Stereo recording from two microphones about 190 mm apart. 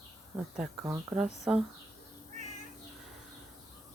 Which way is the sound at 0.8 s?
15° right (ahead or behind).